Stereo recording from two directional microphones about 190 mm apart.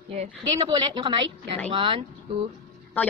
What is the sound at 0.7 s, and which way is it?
A woman's voice, 25° right (ahead or behind).